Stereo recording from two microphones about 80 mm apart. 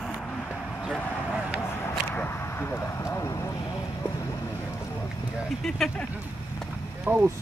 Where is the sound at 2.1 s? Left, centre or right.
Left.